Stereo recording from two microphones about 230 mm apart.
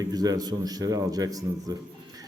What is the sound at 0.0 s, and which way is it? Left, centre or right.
A man's voice, centre.